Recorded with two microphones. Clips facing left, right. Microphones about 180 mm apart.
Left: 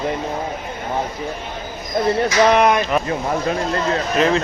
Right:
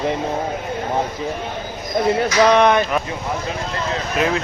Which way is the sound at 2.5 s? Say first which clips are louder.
Right 1 dB; centre (ahead or behind).